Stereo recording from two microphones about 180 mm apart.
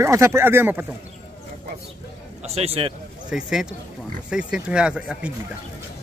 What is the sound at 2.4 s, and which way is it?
Speech, 35° right (ahead or behind).